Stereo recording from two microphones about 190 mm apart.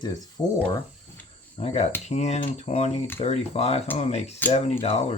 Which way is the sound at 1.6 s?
35° left (ahead or behind).